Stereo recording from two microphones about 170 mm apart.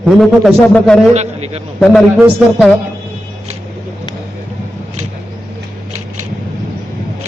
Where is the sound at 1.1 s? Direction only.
40° right (ahead or behind).